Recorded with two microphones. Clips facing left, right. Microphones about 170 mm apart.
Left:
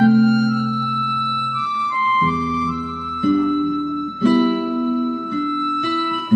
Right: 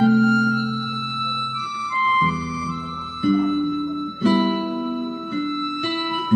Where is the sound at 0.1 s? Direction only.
30° left (ahead or behind).